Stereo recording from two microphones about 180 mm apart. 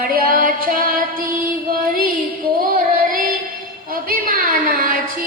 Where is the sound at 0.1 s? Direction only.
50° right (ahead or behind).